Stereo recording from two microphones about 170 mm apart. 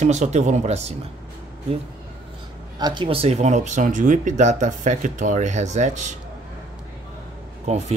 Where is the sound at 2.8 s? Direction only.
25° right (ahead or behind); by 6.1 s 45° right (ahead or behind).